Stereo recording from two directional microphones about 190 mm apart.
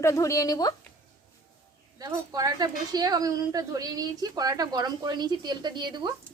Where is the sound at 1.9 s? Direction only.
20° right (ahead or behind).